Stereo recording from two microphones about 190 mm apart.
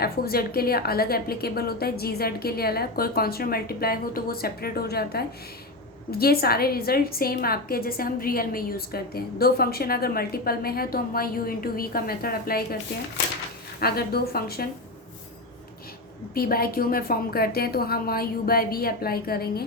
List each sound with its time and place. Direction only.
0.0 s a woman's voice: 50° left (ahead or behind)
13.7 s a woman's voice: 55° left (ahead or behind)
16.3 s a woman's voice: 50° left (ahead or behind)